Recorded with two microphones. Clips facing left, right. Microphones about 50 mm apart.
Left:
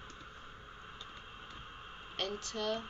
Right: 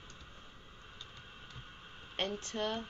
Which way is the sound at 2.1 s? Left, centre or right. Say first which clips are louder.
Right 2 dB; right.